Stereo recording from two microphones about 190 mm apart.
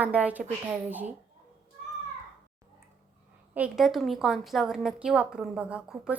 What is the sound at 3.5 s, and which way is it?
A woman's voice, 5° right (ahead or behind).